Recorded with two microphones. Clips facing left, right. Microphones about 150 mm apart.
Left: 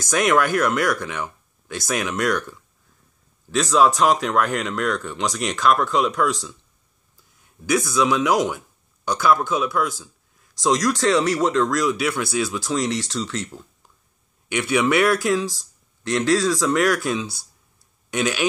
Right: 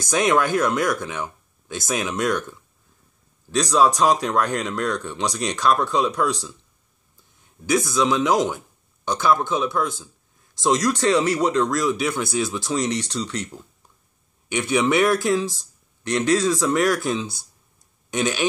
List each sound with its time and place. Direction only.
0.0 s speech: 20° right (ahead or behind)
3.6 s speech: 20° right (ahead or behind)
7.6 s speech: 25° right (ahead or behind)
14.6 s speech: 20° right (ahead or behind)